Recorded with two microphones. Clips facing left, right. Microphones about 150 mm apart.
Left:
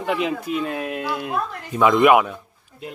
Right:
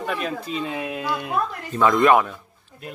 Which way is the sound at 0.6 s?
Centre (ahead or behind).